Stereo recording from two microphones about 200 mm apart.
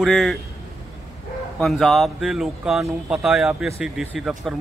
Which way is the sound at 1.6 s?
Centre (ahead or behind).